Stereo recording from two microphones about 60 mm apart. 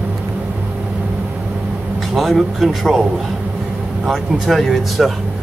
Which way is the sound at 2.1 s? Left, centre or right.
Centre.